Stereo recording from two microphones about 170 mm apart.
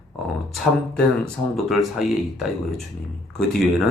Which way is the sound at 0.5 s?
Centre (ahead or behind).